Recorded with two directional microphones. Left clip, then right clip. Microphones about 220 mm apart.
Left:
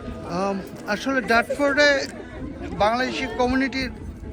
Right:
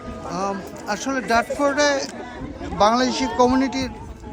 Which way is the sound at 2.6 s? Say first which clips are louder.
Right 4 dB; 25° right (ahead or behind).